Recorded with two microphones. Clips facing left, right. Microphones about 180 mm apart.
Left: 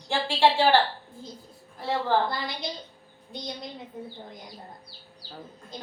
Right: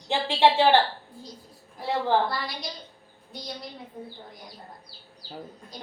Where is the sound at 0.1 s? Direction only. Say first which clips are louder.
Right 1 dB; 20° right (ahead or behind).